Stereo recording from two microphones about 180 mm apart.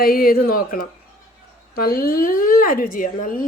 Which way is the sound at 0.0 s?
55° left (ahead or behind).